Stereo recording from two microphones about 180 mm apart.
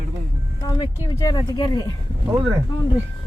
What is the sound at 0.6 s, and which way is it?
Speech, 20° left (ahead or behind).